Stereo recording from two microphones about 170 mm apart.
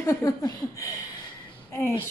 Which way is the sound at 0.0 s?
20° left (ahead or behind).